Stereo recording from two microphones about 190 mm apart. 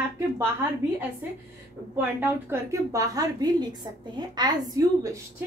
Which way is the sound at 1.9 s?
10° right (ahead or behind).